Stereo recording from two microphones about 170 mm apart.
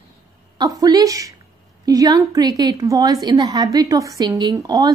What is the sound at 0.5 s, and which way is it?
A woman's voice, 20° right (ahead or behind).